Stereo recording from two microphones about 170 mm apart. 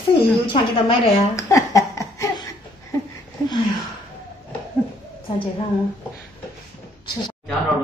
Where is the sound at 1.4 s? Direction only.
20° left (ahead or behind).